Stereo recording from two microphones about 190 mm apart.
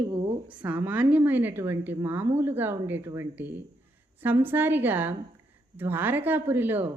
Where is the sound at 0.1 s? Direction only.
25° right (ahead or behind).